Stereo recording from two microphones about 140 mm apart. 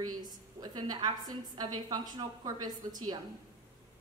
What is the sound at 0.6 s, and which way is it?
A woman's voice, 30° right (ahead or behind).